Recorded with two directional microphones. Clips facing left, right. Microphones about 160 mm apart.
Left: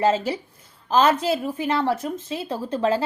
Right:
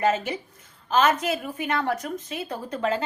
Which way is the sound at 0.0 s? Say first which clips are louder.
Left 3 dB; 30° left (ahead or behind).